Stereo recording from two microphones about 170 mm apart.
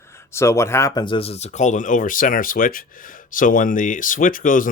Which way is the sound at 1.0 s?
30° left (ahead or behind).